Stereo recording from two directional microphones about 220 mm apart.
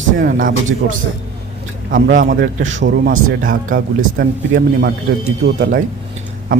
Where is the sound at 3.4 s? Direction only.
40° right (ahead or behind).